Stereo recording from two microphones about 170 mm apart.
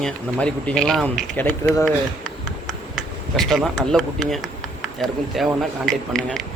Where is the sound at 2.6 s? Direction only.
Centre (ahead or behind).